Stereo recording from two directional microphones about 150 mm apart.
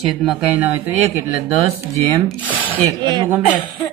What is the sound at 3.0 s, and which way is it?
Speech, 30° right (ahead or behind).